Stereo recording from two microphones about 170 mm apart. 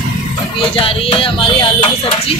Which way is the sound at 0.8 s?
30° left (ahead or behind).